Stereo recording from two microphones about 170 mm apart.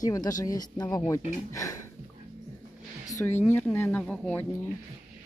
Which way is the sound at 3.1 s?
20° left (ahead or behind).